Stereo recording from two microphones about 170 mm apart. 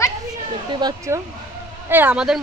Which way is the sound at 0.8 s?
25° right (ahead or behind).